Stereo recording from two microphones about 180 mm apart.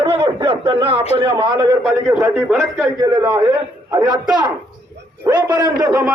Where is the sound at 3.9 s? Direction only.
20° right (ahead or behind).